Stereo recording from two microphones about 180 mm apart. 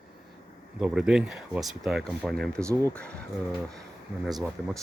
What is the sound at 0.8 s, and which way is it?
Speech, 5° right (ahead or behind).